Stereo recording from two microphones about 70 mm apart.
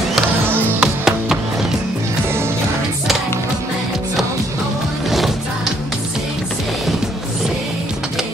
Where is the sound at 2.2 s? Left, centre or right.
Right.